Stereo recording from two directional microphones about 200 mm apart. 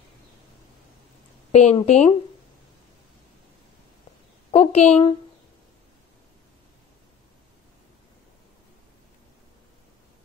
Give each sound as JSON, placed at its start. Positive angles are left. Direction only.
{"t": 1.5, "sound": "a woman's voice", "side_deg": 35}
{"t": 4.5, "sound": "a woman's voice", "side_deg": 30}